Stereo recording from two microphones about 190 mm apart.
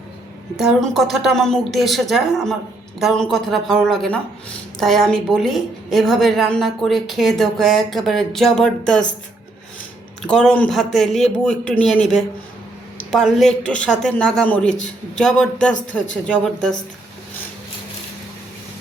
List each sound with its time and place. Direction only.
0.5 s speech: centre (ahead or behind)
10.2 s speech: 5° left (ahead or behind)